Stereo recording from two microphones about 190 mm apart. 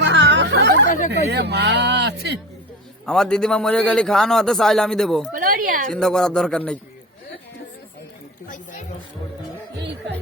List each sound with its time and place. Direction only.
0.0 s a sound: 70° right (ahead or behind)
1.1 s speech: 60° right (ahead or behind)
3.1 s a man's voice: 5° left (ahead or behind)
5.3 s a woman's voice: 45° right (ahead or behind)
5.9 s a man's voice: centre (ahead or behind)